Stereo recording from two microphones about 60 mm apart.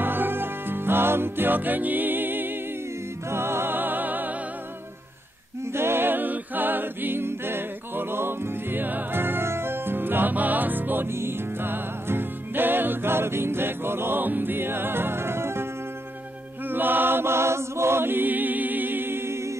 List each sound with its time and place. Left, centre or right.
0.0 s music: right
5.7 s a capella: right
16.6 s chant: right